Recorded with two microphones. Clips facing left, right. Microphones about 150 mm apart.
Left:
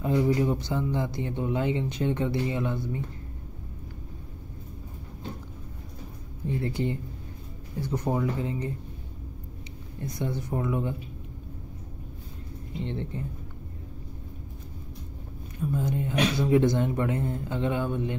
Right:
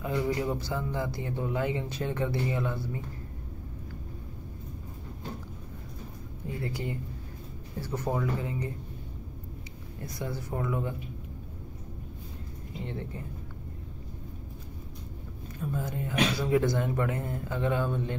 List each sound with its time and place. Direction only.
0.1 s speech: 20° left (ahead or behind)
6.6 s speech: 25° left (ahead or behind)
7.8 s speech: 15° left (ahead or behind)
10.0 s speech: 20° left (ahead or behind)
12.8 s speech: 25° left (ahead or behind)
15.6 s speech: 20° left (ahead or behind)